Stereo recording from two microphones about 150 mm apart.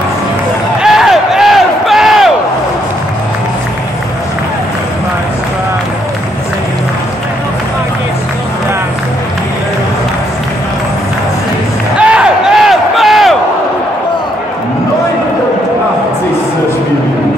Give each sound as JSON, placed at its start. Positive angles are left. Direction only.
{"t": 0.8, "sound": "battle cry", "side_deg": 0}
{"t": 12.0, "sound": "crowd", "side_deg": -5}